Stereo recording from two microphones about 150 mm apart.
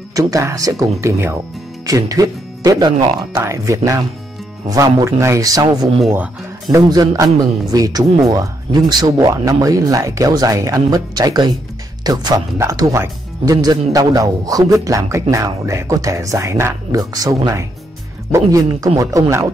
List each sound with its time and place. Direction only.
0.1 s speech: 25° right (ahead or behind)
6.0 s speech: 10° right (ahead or behind)
6.7 s speech: 25° right (ahead or behind)